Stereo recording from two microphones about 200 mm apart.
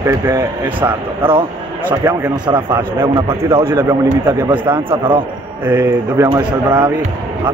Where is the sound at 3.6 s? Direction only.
15° right (ahead or behind).